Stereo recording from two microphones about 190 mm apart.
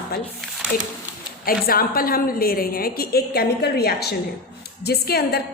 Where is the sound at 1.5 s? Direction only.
50° left (ahead or behind).